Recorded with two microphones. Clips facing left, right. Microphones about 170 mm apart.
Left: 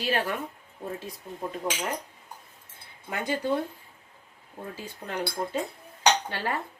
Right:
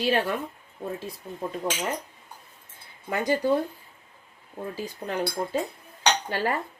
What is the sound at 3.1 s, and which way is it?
Speech, 40° right (ahead or behind).